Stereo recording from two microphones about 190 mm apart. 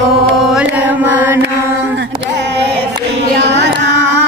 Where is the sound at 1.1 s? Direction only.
10° right (ahead or behind).